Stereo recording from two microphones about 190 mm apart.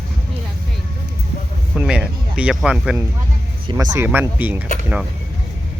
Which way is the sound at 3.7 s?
20° right (ahead or behind).